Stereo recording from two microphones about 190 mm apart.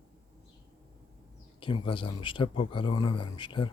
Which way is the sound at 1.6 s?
25° left (ahead or behind).